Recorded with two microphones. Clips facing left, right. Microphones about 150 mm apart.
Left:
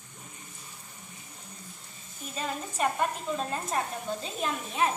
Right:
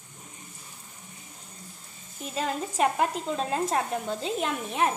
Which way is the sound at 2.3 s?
80° right.